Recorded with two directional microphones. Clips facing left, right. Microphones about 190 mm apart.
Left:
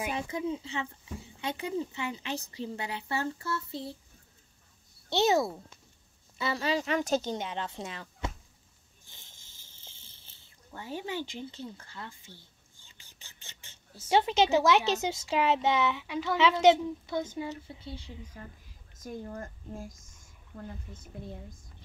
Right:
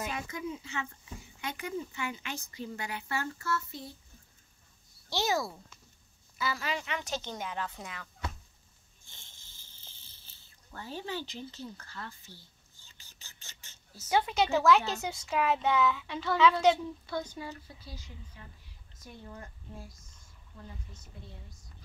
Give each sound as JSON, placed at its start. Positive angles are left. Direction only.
{"t": 0.1, "sound": "speech", "side_deg": 25}
{"t": 5.1, "sound": "speech", "side_deg": 25}
{"t": 7.3, "sound": "speech", "side_deg": 25}
{"t": 10.7, "sound": "speech", "side_deg": 15}
{"t": 13.9, "sound": "speech", "side_deg": 25}
{"t": 18.4, "sound": "speech", "side_deg": 45}